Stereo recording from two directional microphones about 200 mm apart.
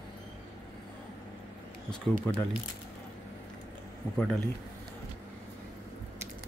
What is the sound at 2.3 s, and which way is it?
Speech, 10° left (ahead or behind).